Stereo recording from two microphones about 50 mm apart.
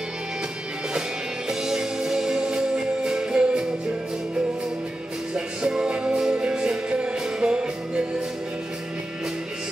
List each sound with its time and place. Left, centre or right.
1.5 s music: centre
5.3 s music: centre